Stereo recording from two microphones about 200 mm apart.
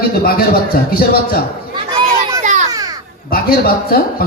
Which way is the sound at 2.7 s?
20° right (ahead or behind).